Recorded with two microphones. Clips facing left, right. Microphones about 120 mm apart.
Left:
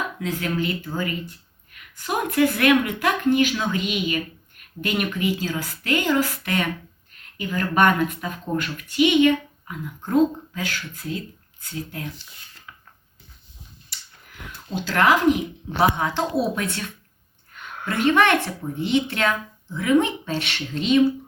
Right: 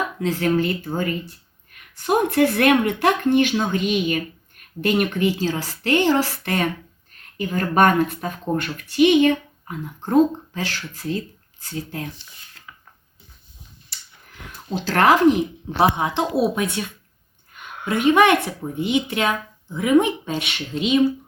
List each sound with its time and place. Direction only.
0.2 s speech: 40° right (ahead or behind)
14.8 s speech: 40° right (ahead or behind)
15.8 s speech: 20° right (ahead or behind)
17.8 s speech: 15° right (ahead or behind)